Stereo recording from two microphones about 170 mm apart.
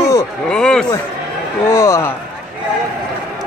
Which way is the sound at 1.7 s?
15° left (ahead or behind).